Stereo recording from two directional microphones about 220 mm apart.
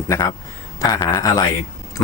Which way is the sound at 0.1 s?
15° left (ahead or behind).